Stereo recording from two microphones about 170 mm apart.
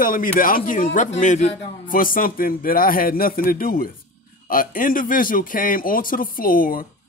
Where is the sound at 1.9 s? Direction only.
55° left (ahead or behind).